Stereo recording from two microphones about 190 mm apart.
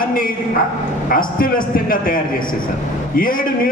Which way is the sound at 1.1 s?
50° left (ahead or behind).